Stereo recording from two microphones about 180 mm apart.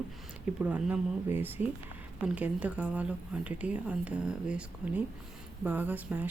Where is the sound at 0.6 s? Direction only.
5° right (ahead or behind).